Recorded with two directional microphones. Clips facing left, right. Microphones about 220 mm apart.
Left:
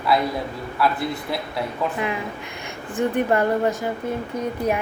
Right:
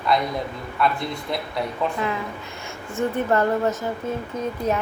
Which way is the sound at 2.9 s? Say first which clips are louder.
Left 1 dB; 15° left (ahead or behind).